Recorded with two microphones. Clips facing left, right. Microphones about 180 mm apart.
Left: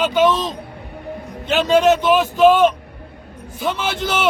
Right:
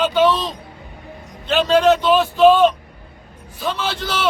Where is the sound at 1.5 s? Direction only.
15° left (ahead or behind).